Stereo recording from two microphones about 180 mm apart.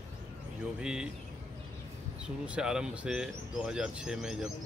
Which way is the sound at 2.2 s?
5° right (ahead or behind).